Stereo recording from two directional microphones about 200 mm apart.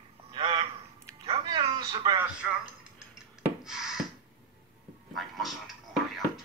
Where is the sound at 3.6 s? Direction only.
Centre (ahead or behind).